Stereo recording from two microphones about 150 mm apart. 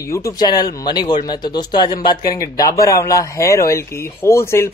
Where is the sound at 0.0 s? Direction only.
20° left (ahead or behind).